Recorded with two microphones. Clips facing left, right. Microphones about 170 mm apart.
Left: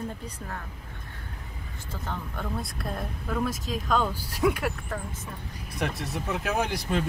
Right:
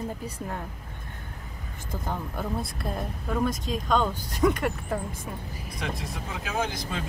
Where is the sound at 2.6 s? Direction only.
Centre (ahead or behind).